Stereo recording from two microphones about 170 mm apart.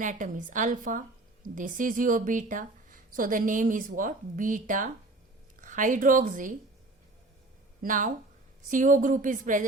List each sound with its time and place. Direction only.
0.0 s a woman's voice: 50° right (ahead or behind)
7.8 s speech: 50° right (ahead or behind)